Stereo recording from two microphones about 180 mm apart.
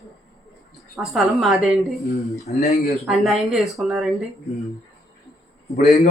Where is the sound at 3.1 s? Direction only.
Centre (ahead or behind).